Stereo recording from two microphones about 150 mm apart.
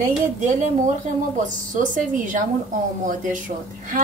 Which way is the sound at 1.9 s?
60° right (ahead or behind).